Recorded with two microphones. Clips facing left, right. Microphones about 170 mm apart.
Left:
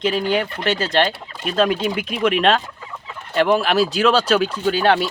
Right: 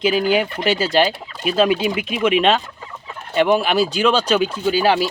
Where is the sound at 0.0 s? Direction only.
5° right (ahead or behind).